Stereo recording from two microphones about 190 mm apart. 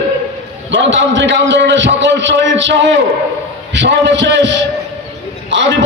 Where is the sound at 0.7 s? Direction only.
70° right (ahead or behind).